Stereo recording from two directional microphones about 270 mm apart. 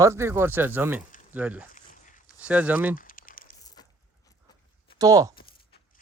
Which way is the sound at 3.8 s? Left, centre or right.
Centre.